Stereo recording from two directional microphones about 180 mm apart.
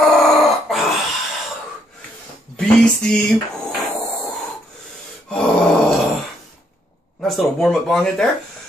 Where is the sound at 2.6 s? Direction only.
5° left (ahead or behind).